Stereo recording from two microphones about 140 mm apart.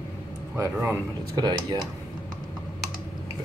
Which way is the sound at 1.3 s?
30° right (ahead or behind).